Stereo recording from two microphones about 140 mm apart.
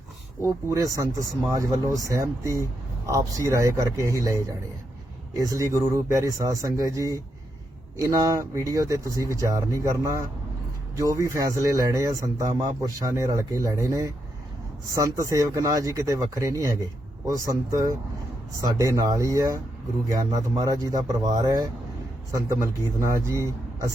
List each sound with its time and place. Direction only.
0.4 s speech: 25° right (ahead or behind)
5.4 s speech: 25° right (ahead or behind)